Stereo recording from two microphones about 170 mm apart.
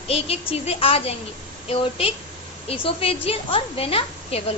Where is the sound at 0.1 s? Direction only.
35° left (ahead or behind).